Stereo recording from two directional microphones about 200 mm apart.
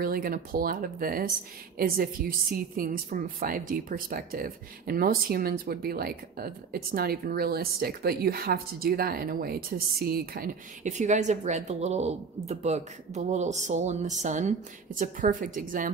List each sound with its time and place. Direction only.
0.0 s a woman's voice: 45° right (ahead or behind)